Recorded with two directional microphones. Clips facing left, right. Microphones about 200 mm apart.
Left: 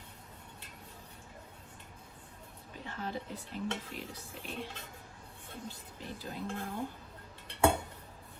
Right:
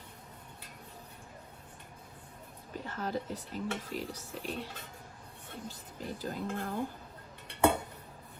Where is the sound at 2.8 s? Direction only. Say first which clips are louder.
Right 3 dB; 45° right (ahead or behind).